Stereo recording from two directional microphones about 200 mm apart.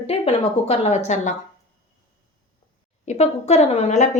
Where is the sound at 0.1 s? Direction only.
30° left (ahead or behind).